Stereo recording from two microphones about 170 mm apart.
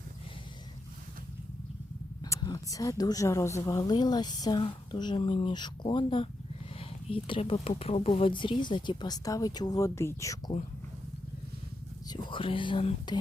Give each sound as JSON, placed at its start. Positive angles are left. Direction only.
{"t": 2.2, "sound": "a woman's voice", "side_deg": 20}
{"t": 12.0, "sound": "a woman's voice", "side_deg": 25}